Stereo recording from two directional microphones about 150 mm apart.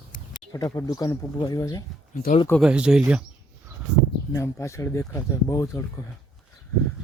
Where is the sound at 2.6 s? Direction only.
5° right (ahead or behind).